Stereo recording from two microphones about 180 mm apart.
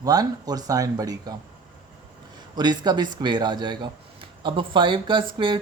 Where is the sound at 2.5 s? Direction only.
25° right (ahead or behind).